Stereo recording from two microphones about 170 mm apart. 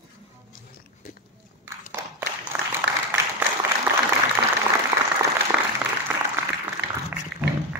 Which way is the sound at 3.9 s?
15° right (ahead or behind).